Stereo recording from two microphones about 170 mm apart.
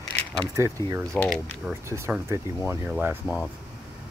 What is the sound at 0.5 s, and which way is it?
Speech, 15° right (ahead or behind).